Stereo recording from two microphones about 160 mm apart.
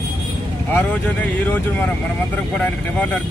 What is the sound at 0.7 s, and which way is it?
Speech, 10° left (ahead or behind).